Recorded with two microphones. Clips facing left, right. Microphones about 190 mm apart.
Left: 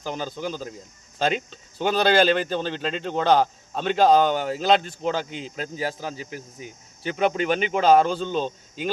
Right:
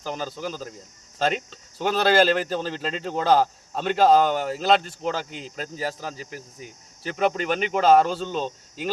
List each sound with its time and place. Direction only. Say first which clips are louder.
0.0 s speech: left 1 dB; centre (ahead or behind)